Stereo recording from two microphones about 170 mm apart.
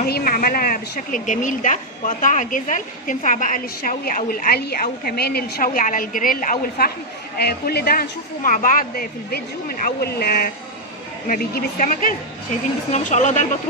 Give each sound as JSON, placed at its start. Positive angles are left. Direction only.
{"t": 0.0, "sound": "a woman's voice", "side_deg": 60}
{"t": 7.3, "sound": "a woman's voice", "side_deg": 75}